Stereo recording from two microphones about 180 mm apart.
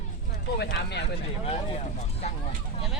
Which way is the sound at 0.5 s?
65° left (ahead or behind).